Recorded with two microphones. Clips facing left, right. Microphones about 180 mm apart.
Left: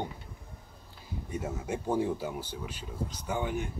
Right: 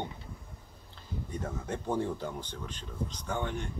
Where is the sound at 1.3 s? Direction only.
10° left (ahead or behind).